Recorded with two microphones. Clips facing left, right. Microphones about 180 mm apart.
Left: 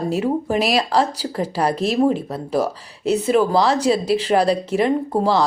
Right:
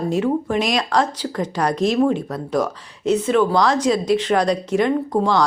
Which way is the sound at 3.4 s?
30° left (ahead or behind).